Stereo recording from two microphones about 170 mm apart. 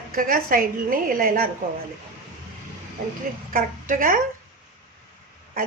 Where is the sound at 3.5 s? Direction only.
55° right (ahead or behind).